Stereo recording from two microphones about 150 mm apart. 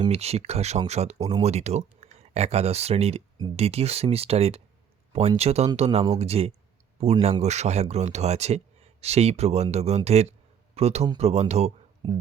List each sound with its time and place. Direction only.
0.1 s speech: 45° right (ahead or behind)
12.0 s speech: 30° right (ahead or behind)